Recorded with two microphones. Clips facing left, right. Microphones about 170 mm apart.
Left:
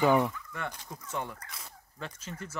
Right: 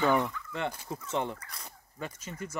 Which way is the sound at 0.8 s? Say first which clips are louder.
Right 5 dB; 25° right (ahead or behind).